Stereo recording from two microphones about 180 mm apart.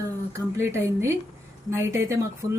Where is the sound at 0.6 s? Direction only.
15° right (ahead or behind).